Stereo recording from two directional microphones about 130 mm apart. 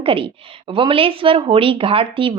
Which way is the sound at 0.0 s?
45° right (ahead or behind).